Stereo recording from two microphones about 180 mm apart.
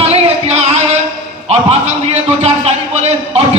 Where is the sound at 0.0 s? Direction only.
35° right (ahead or behind).